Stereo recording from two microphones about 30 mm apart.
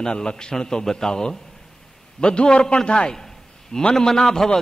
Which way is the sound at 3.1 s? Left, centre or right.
Centre.